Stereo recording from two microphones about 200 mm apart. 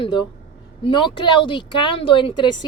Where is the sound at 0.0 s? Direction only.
20° left (ahead or behind).